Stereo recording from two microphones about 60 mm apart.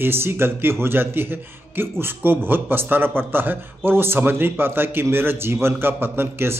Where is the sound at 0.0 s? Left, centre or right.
Right.